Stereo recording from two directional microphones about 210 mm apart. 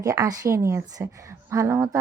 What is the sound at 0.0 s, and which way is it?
A woman's voice, 15° right (ahead or behind).